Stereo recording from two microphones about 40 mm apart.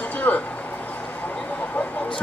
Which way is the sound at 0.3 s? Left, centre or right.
Left.